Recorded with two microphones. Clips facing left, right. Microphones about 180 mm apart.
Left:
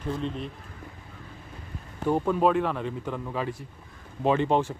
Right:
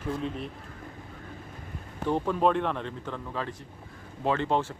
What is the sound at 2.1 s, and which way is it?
Speech, 10° left (ahead or behind).